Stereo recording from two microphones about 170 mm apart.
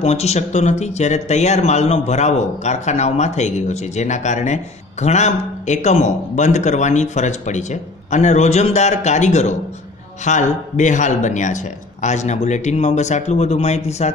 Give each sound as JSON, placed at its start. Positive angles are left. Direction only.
{"t": 0.0, "sound": "a man's voice", "side_deg": 40}